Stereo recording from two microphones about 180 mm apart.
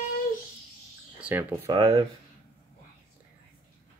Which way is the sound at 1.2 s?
10° right (ahead or behind).